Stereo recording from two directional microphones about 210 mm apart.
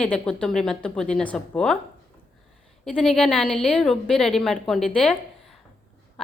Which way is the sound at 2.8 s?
Centre (ahead or behind).